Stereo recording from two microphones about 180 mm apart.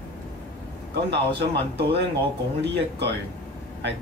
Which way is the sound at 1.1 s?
65° right (ahead or behind).